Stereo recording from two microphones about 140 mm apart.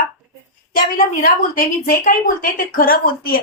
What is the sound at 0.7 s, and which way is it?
A woman's voice, 85° left.